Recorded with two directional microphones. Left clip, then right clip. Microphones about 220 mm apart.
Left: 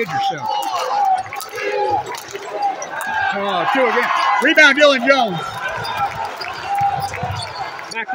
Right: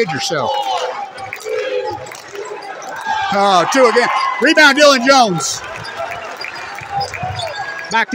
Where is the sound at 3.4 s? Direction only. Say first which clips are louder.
Right 9 dB; 40° right (ahead or behind).